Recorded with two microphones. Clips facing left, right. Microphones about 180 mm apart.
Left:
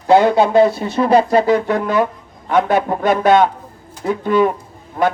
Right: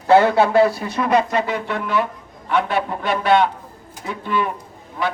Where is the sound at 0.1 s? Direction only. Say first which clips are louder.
Left 2 dB; 15° left (ahead or behind).